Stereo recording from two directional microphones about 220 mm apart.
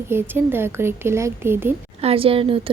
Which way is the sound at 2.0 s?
25° right (ahead or behind).